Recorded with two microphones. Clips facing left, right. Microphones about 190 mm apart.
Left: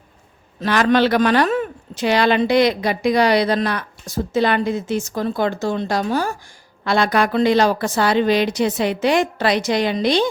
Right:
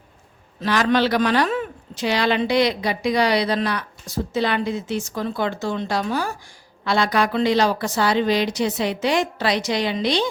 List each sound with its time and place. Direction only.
0.6 s a man's voice: 55° left (ahead or behind)
6.8 s a man's voice: 55° left (ahead or behind)